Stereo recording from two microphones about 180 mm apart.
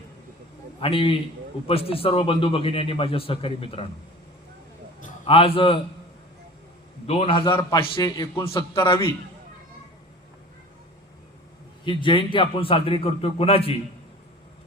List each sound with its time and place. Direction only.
0.8 s a man's voice: 30° left (ahead or behind)
5.2 s a man's voice: 30° left (ahead or behind)
7.1 s a man's voice: 30° left (ahead or behind)
11.9 s a man's voice: 25° left (ahead or behind)